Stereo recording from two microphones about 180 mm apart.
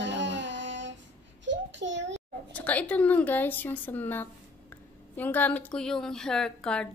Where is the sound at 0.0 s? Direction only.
85° right.